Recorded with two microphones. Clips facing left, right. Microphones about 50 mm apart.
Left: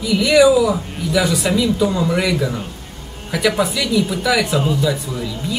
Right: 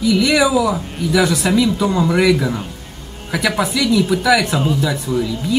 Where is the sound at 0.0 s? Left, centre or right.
Centre.